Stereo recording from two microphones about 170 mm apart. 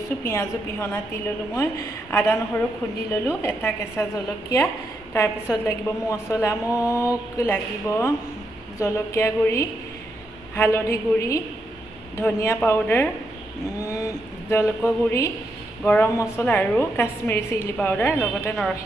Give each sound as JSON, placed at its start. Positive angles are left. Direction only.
{"t": 0.2, "sound": "a woman's voice", "side_deg": 15}
{"t": 14.5, "sound": "a woman's voice", "side_deg": 15}